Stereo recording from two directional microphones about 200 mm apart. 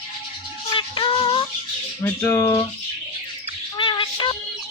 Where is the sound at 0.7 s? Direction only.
25° left (ahead or behind).